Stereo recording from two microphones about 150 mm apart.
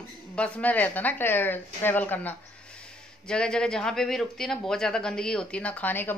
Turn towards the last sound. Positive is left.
turn(degrees=10)  # may be behind; listen again after turning